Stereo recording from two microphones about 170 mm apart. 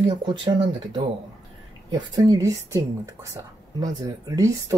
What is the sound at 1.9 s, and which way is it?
Speech, 20° right (ahead or behind).